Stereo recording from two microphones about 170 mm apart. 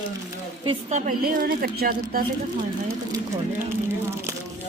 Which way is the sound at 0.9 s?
45° right (ahead or behind).